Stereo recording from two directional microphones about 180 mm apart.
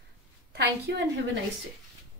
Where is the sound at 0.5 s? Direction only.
70° right (ahead or behind).